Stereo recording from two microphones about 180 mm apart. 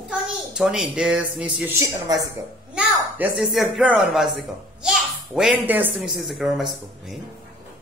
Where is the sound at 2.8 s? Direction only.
5° right (ahead or behind).